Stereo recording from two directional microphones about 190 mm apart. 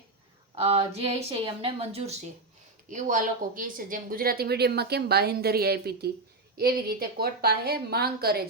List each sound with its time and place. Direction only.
0.5 s speech: 30° right (ahead or behind)
2.9 s a woman's voice: 40° right (ahead or behind)